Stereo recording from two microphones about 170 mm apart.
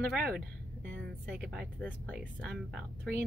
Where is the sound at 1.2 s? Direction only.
Centre (ahead or behind).